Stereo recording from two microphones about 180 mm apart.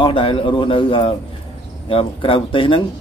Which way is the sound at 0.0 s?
30° left (ahead or behind).